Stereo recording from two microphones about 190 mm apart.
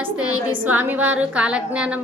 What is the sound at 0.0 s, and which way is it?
A woman's voice, 5° right (ahead or behind).